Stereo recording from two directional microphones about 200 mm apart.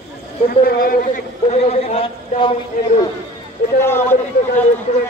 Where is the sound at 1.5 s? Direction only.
35° left (ahead or behind).